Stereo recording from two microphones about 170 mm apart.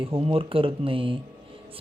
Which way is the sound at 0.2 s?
35° right (ahead or behind).